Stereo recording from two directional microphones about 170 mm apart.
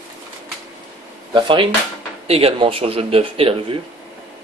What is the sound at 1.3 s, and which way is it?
Speech, 30° right (ahead or behind).